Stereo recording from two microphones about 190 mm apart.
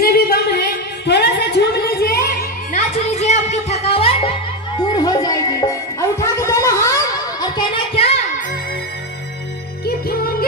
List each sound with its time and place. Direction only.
0.0 s a sound: 55° left (ahead or behind)
2.7 s music: 35° left (ahead or behind)
4.9 s music: 20° left (ahead or behind)
9.8 s music: 55° left (ahead or behind)